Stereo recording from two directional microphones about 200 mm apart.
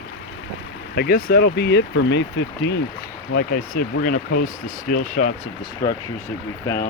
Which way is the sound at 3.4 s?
45° left (ahead or behind).